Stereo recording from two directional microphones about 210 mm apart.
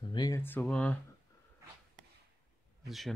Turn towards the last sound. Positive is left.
turn(degrees=0)  # may be behind; listen again after turning